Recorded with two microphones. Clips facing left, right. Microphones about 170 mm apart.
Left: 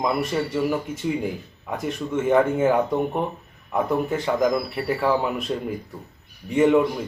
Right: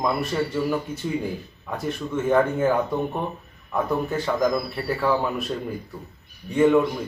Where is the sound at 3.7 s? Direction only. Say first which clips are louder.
Left 1 dB; 15° left (ahead or behind).